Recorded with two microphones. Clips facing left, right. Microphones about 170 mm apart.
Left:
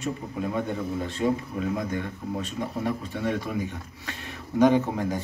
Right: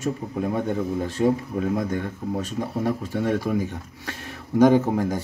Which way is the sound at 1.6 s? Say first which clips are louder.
Right 4 dB; 45° right (ahead or behind).